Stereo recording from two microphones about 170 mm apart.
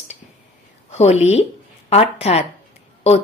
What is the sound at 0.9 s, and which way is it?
Speech, 40° left (ahead or behind).